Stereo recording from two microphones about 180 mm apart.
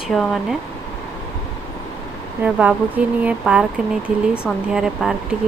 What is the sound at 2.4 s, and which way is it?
Speech, 5° right (ahead or behind).